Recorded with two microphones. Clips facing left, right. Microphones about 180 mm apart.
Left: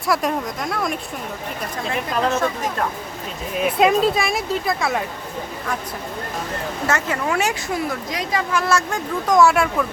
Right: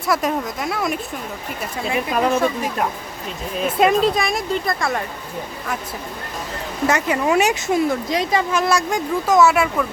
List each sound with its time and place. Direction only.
0.1 s a woman's voice: centre (ahead or behind)
3.6 s speech: centre (ahead or behind)
6.8 s a woman's voice: 15° right (ahead or behind)
9.3 s speech: 5° right (ahead or behind)